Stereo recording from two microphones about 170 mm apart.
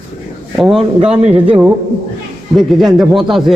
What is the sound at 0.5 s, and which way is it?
A man's voice, 5° right (ahead or behind).